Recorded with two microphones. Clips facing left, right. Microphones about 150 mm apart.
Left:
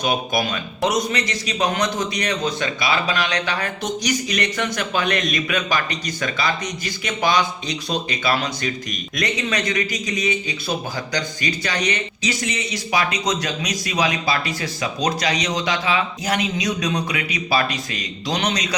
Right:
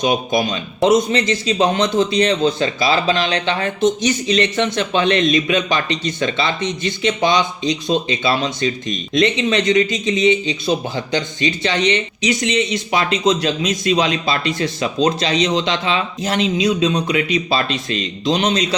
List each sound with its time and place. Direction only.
0.0 s speech: 20° right (ahead or behind)